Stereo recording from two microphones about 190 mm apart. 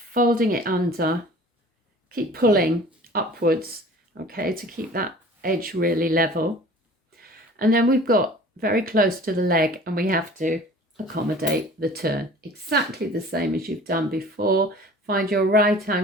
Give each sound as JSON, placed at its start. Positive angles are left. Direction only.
{"t": 0.1, "sound": "speech", "side_deg": -50}